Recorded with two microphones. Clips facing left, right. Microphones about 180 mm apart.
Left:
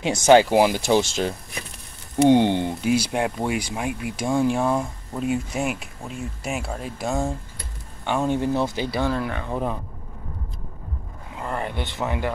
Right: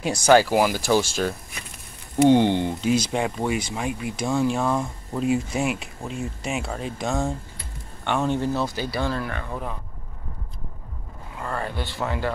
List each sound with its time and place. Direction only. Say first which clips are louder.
0.0 s speech: left 2 dB; 20° left (ahead or behind)
11.3 s speech: left 1 dB; 20° left (ahead or behind)